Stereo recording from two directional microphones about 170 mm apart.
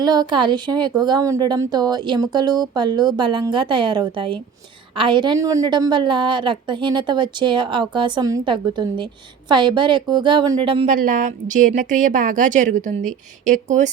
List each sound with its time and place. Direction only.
0.0 s a woman's voice: 25° right (ahead or behind)
10.8 s a woman's voice: 50° right (ahead or behind)